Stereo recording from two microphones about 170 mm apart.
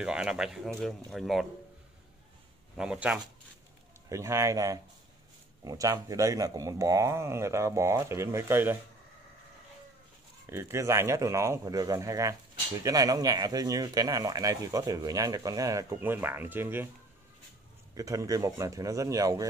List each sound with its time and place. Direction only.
0.0 s speech: 5° right (ahead or behind)
2.8 s speech: 5° right (ahead or behind)
4.1 s speech: 15° right (ahead or behind)
10.4 s speech: 15° right (ahead or behind)
17.9 s speech: 20° right (ahead or behind)